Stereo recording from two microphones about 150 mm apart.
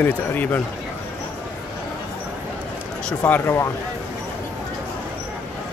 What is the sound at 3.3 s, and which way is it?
Speech, 15° left (ahead or behind).